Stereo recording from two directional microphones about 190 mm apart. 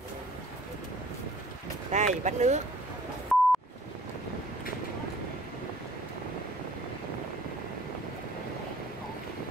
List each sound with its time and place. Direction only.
1.9 s speech: 40° right (ahead or behind)
3.3 s beep: 5° left (ahead or behind)